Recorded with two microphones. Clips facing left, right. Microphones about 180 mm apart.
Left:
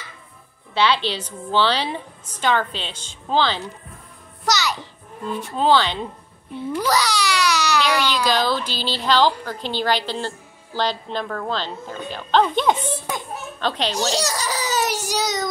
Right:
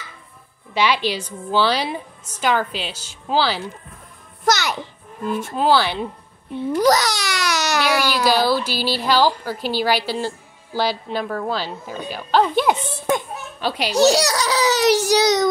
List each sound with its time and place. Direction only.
0.7 s speech: 10° right (ahead or behind)
4.5 s music: 55° right (ahead or behind)
5.6 s speech: 10° right (ahead or behind)
6.7 s babbling: 45° right (ahead or behind)
7.8 s speech: 10° right (ahead or behind)
13.9 s a child's voice: 70° right (ahead or behind)